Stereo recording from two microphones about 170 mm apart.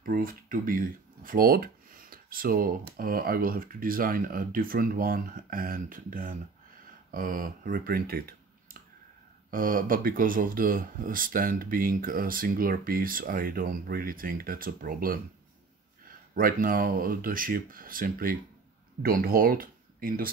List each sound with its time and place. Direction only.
0.0 s speech: 55° right (ahead or behind)